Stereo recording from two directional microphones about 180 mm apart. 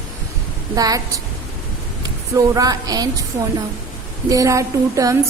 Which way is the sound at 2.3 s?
20° right (ahead or behind).